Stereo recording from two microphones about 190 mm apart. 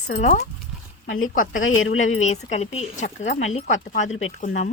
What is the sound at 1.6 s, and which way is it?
Speech, 90° left.